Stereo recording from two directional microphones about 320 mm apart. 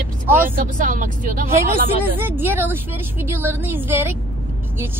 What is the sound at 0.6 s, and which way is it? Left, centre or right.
Speech, right.